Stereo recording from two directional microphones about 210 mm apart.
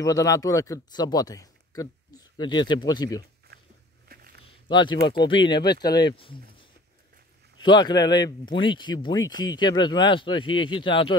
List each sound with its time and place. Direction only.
0.0 s speech: 15° left (ahead or behind)
3.5 s walk: 50° right (ahead or behind)
4.4 s a sound: 25° left (ahead or behind)
5.1 s speech: 20° left (ahead or behind)